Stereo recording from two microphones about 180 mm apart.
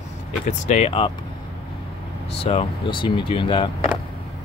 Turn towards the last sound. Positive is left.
turn(degrees=30)  # may be behind; listen again after turning